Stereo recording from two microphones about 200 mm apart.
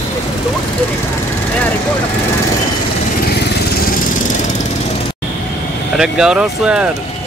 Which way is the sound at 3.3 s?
50° left (ahead or behind).